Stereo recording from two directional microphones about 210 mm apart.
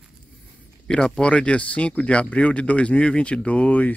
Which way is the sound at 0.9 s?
5° left (ahead or behind).